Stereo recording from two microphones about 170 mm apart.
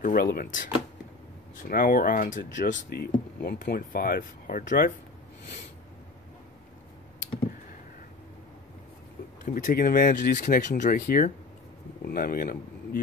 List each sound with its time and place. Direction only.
0.0 s speech: 60° left (ahead or behind)
2.7 s speech: 70° left (ahead or behind); by 4.9 s 55° left (ahead or behind)
9.4 s speech: 50° left (ahead or behind)